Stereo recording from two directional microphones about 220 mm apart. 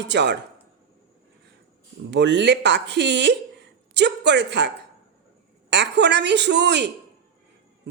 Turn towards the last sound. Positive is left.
turn(degrees=-50)  # may be behind; listen again after turning